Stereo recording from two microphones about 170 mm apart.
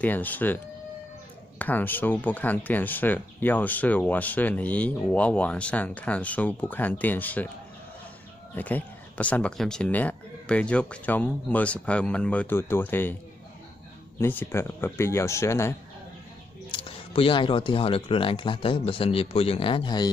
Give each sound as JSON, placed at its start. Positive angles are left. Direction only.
{"t": 0.0, "sound": "speech", "side_deg": 10}
{"t": 1.6, "sound": "speech", "side_deg": 10}
{"t": 8.5, "sound": "speech", "side_deg": 10}
{"t": 14.2, "sound": "speech", "side_deg": 10}
{"t": 16.7, "sound": "speech", "side_deg": 35}